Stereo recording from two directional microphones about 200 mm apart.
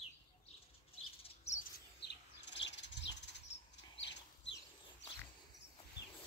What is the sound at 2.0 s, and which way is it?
Bird, 60° left (ahead or behind).